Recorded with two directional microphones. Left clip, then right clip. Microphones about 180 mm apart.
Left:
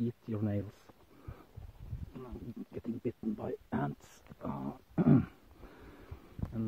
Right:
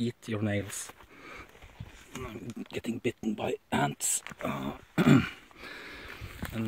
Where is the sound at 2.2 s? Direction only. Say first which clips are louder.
Right 5 dB; 20° right (ahead or behind).